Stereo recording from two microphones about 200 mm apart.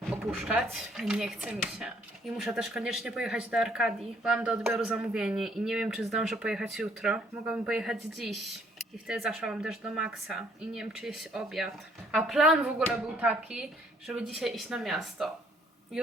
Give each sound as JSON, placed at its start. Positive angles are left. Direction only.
{"t": 0.1, "sound": "speech", "side_deg": 0}